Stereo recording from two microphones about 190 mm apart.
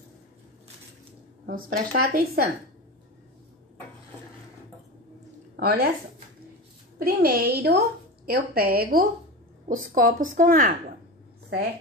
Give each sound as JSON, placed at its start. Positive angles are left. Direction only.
{"t": 1.4, "sound": "speech", "side_deg": -50}
{"t": 5.6, "sound": "speech", "side_deg": -55}
{"t": 7.0, "sound": "speech", "side_deg": -55}